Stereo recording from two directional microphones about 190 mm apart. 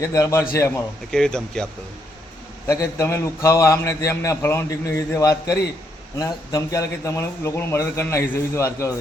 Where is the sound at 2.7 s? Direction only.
15° left (ahead or behind).